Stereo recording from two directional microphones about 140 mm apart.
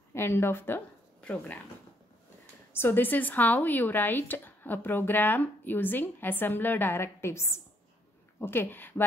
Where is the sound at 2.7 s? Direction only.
15° left (ahead or behind).